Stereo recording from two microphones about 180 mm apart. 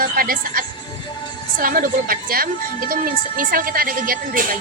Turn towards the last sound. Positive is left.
turn(degrees=-55)  # may be behind; listen again after turning